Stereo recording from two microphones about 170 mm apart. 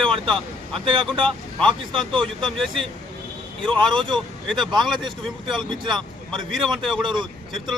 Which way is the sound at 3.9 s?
30° right (ahead or behind).